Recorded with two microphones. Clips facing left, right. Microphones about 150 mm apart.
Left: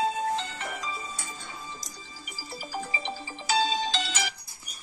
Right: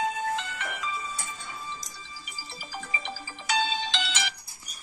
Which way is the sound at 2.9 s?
30° left (ahead or behind).